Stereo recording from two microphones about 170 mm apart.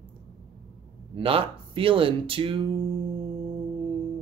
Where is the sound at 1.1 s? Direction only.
30° right (ahead or behind).